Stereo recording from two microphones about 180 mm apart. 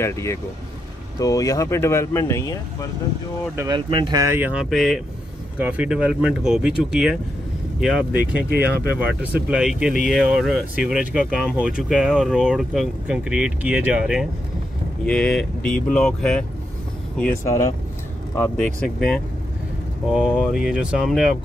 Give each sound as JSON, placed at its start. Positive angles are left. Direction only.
{"t": 0.0, "sound": "speech", "side_deg": 15}
{"t": 3.5, "sound": "speech", "side_deg": -20}
{"t": 8.5, "sound": "speech", "side_deg": -60}
{"t": 8.9, "sound": "speech", "side_deg": -5}
{"t": 17.2, "sound": "speech", "side_deg": 15}